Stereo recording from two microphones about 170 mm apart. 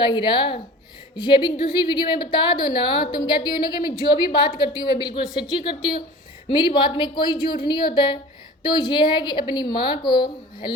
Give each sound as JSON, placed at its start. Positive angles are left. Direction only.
{"t": 0.0, "sound": "a woman's voice", "side_deg": 25}